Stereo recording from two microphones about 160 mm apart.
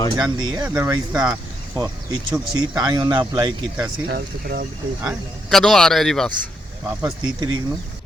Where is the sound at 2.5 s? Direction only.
25° right (ahead or behind).